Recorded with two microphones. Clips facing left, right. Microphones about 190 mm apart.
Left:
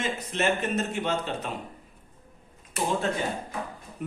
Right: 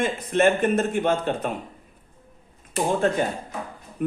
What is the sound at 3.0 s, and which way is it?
Speech, 55° right (ahead or behind).